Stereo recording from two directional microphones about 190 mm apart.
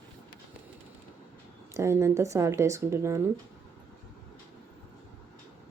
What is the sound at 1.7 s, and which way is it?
Speech, 15° right (ahead or behind).